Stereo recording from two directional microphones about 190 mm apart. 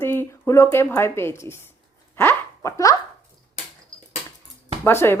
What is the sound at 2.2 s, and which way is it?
Zipper, 15° left (ahead or behind).